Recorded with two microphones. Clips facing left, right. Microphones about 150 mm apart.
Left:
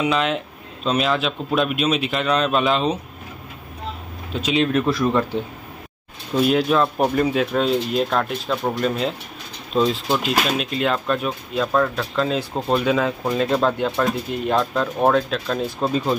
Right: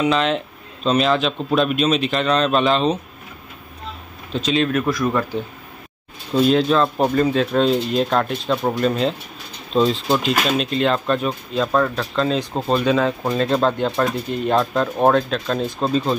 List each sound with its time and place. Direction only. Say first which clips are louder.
0.0 s speech: right 2 dB; 5° left (ahead or behind)
4.3 s speech: right 2 dB; 10° left (ahead or behind)
4.6 s speech: left 1 dB; 25° left (ahead or behind)
6.3 s speech: right 2 dB; 10° left (ahead or behind)